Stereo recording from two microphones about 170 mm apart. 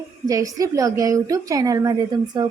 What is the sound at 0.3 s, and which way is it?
A woman's voice, 20° right (ahead or behind).